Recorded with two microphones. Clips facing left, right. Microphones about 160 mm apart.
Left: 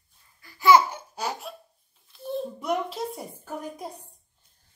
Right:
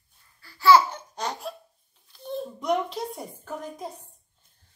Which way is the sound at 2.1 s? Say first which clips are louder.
Left 2 dB; 5° left (ahead or behind).